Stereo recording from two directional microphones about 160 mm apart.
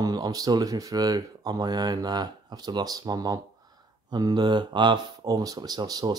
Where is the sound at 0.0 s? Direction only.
25° right (ahead or behind).